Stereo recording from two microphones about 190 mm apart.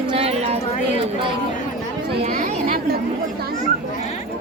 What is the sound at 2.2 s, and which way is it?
Chatter, 45° right (ahead or behind).